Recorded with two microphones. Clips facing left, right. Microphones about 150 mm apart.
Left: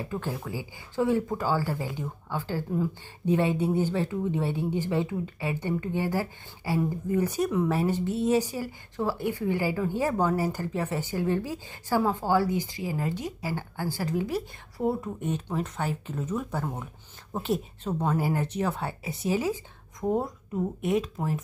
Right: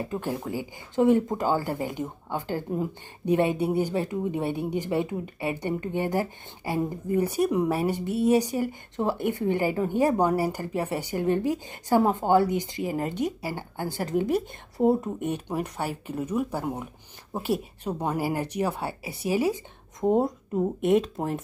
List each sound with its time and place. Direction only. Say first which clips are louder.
0.0 s speech: right 3 dB; 20° right (ahead or behind)
14.0 s a woman's voice: right 4 dB; 55° right (ahead or behind)
14.3 s speech: right 5 dB; 20° right (ahead or behind)
20.0 s speech: right 5 dB; 25° right (ahead or behind)